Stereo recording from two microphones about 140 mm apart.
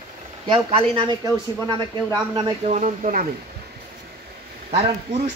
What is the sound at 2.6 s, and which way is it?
Speech, 55° right (ahead or behind).